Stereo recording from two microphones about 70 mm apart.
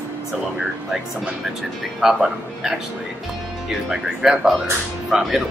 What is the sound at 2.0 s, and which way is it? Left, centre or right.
Speech, centre.